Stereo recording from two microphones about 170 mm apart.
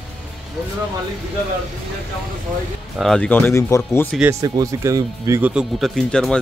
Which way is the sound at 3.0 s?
5° left (ahead or behind).